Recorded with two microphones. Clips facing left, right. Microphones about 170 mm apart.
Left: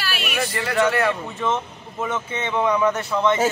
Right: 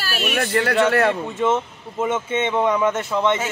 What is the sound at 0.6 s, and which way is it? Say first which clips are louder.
Speech: right 2 dB; 60° right (ahead or behind).